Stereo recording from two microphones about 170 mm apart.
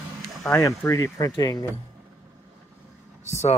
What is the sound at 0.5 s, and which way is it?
Speech, 20° left (ahead or behind).